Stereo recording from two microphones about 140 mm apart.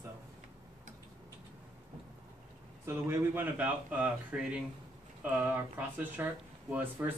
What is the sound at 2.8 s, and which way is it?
Speech, 15° right (ahead or behind).